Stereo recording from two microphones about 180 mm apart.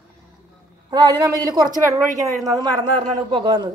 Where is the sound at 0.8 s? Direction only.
25° right (ahead or behind).